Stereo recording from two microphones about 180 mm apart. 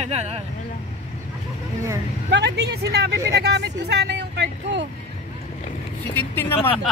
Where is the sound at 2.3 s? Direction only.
65° right (ahead or behind).